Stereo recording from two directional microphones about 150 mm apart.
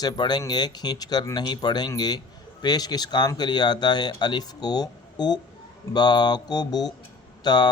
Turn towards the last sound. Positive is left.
turn(degrees=30)  # may be behind; listen again after turning